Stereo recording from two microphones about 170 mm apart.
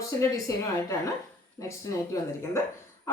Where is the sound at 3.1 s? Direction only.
15° left (ahead or behind).